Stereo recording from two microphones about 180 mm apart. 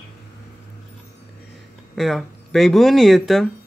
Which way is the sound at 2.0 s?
Centre (ahead or behind).